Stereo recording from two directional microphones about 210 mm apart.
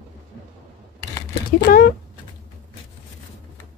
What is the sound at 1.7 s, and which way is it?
Speech, 45° left (ahead or behind).